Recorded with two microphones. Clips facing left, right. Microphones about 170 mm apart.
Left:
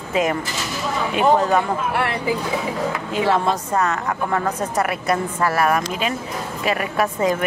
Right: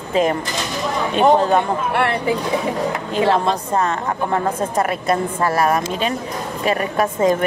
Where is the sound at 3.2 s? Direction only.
25° right (ahead or behind).